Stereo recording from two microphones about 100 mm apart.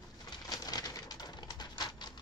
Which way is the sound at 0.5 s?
40° left (ahead or behind).